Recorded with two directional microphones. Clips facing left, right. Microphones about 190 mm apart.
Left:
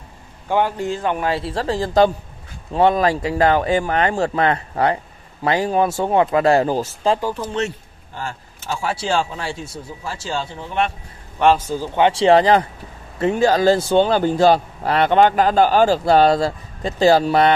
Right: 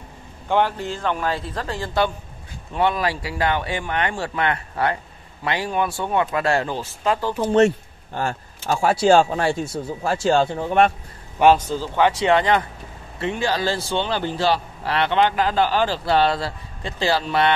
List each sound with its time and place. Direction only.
0.5 s speech: 10° left (ahead or behind)
1.3 s speech: 30° left (ahead or behind)
7.5 s a man's voice: 55° right (ahead or behind)
8.8 s speech: 45° right (ahead or behind)
11.5 s speech: 10° left (ahead or behind)
12.1 s speech: 30° left (ahead or behind)